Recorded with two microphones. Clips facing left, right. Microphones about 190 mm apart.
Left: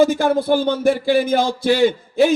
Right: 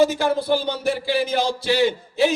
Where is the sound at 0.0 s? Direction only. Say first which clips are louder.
Left 3 dB; 50° left (ahead or behind).